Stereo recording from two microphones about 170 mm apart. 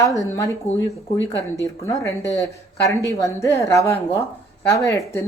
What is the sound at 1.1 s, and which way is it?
Speech, 90° left.